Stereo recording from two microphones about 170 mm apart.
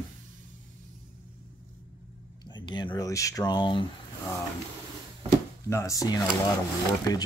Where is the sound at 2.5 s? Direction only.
25° left (ahead or behind).